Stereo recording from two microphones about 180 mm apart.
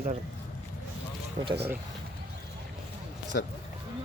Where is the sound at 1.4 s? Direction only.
35° right (ahead or behind).